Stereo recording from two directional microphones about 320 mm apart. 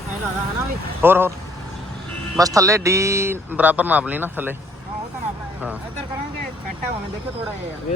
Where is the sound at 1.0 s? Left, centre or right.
Centre.